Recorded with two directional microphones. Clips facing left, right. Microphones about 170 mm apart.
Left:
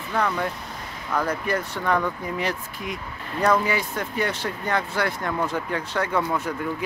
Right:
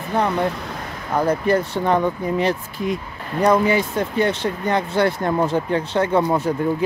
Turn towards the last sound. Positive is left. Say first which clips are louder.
# right 7 dB
turn(degrees=-30)  # may be behind; listen again after turning